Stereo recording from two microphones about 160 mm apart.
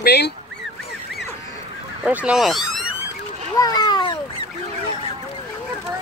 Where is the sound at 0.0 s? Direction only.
90° left.